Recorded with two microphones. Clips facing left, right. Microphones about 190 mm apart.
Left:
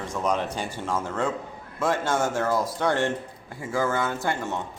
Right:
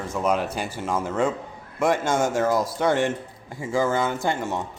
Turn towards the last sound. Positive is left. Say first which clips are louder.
# right 2 dB
turn(degrees=-15)  # may be behind; listen again after turning